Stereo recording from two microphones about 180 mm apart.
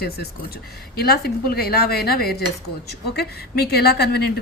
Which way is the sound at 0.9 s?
60° left (ahead or behind).